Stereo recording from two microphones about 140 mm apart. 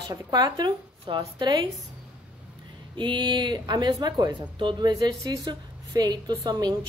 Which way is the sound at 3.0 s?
35° right (ahead or behind).